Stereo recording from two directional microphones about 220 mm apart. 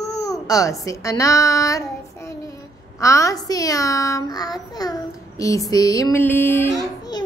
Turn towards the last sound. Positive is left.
turn(degrees=15)  # may be behind; listen again after turning